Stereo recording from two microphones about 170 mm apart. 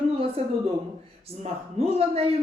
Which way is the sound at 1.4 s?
35° right (ahead or behind).